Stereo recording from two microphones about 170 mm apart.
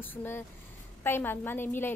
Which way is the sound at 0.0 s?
10° left (ahead or behind).